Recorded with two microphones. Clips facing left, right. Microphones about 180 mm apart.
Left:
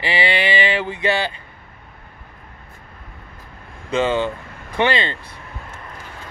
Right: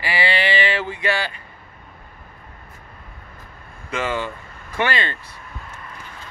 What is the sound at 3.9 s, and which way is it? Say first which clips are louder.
Speech: left 6 dB; 25° left (ahead or behind).